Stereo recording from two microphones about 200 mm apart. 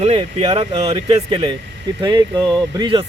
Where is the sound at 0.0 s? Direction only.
30° right (ahead or behind).